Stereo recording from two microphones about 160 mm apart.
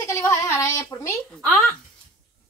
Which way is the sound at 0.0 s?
15° left (ahead or behind).